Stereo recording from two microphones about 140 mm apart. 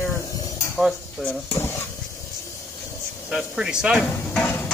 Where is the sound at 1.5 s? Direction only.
15° left (ahead or behind).